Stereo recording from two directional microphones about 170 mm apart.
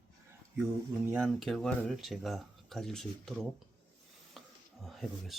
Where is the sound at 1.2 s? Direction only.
Centre (ahead or behind).